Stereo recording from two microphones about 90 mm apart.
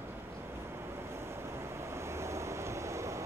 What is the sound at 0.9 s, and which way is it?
Vehicle, 30° right (ahead or behind).